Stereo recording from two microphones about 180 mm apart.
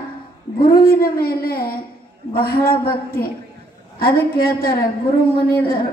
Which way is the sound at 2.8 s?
55° left (ahead or behind).